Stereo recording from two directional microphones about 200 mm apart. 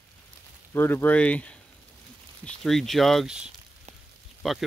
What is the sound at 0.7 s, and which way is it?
Speech, 10° left (ahead or behind).